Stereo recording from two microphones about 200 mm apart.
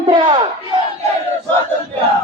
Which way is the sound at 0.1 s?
25° right (ahead or behind).